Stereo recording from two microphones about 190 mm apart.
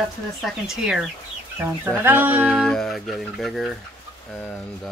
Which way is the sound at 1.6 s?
10° right (ahead or behind).